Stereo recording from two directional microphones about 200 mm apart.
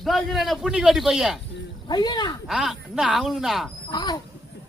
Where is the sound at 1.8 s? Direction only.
20° left (ahead or behind).